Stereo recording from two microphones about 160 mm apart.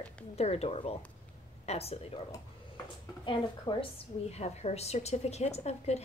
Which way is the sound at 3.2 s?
30° left (ahead or behind).